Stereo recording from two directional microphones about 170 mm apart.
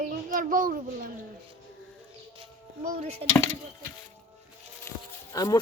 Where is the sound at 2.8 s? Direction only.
50° right (ahead or behind).